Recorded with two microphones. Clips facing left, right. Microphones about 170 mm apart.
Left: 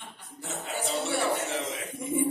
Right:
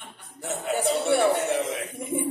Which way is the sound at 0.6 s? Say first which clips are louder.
Right 7 dB; 60° right (ahead or behind).